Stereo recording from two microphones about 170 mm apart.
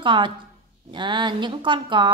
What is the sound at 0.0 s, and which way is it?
A woman's voice, 30° right (ahead or behind).